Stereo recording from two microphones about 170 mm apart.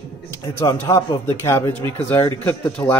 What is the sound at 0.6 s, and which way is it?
Speech, 20° left (ahead or behind).